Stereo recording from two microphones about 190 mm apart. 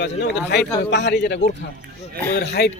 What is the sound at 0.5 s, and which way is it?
Speech, 65° left (ahead or behind).